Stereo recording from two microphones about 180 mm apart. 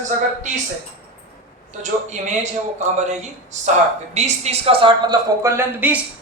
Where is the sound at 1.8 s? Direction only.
40° right (ahead or behind); by 6.0 s 10° right (ahead or behind).